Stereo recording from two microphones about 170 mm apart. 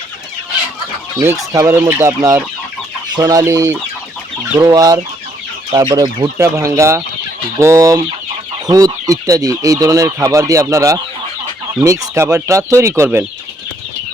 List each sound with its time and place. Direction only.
1.5 s speech: 15° right (ahead or behind)